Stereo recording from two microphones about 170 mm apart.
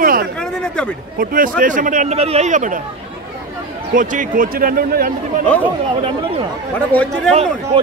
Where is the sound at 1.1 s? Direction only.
55° right (ahead or behind).